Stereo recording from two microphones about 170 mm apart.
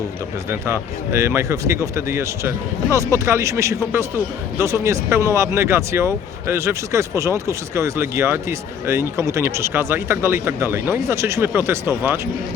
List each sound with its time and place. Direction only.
0.5 s speech: 15° right (ahead or behind)